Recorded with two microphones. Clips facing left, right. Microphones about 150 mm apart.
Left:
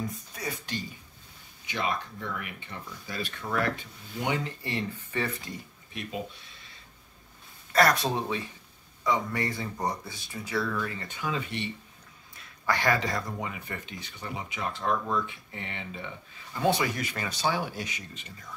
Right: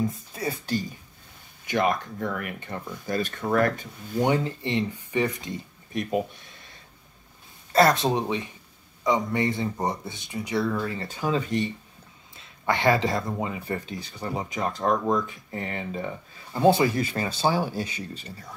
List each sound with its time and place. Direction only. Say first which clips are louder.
0.0 s speech: right 7 dB; 25° right (ahead or behind)
1.7 s speech: right 7 dB; 50° right (ahead or behind)
4.6 s speech: right 6 dB; 20° right (ahead or behind)
5.9 s speech: right 9 dB; 55° right (ahead or behind)
7.7 s speech: right 4 dB; 25° right (ahead or behind); by 11.7 s 40° right (ahead or behind)
12.4 s speech: right 3 dB; 25° right (ahead or behind)